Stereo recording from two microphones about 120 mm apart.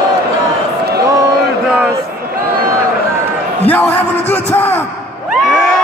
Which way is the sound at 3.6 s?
15° left (ahead or behind).